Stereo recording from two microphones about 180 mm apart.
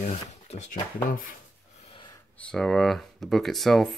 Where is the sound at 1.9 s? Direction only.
25° left (ahead or behind).